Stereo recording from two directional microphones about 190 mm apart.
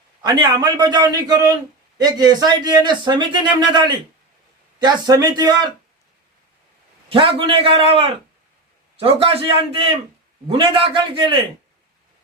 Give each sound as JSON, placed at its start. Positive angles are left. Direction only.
{"t": 0.2, "sound": "speech", "side_deg": -20}
{"t": 7.1, "sound": "speech", "side_deg": -30}